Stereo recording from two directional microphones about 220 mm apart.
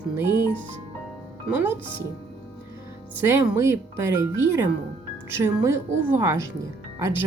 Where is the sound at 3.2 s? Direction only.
10° right (ahead or behind).